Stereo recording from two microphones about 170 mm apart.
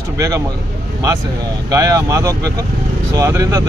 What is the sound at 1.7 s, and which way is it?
Speech, 20° right (ahead or behind).